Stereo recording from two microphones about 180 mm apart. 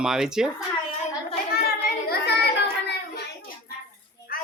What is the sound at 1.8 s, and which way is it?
Child singing, 60° left (ahead or behind).